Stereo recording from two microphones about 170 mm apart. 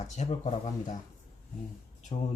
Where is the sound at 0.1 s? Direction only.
40° left (ahead or behind).